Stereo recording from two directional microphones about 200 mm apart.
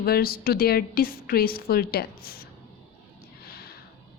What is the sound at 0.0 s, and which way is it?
A woman's voice, 50° left (ahead or behind).